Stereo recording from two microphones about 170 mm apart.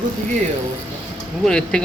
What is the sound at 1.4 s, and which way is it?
Speech, 5° left (ahead or behind).